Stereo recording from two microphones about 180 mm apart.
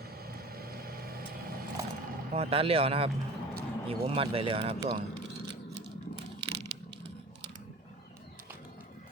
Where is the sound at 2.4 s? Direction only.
30° right (ahead or behind).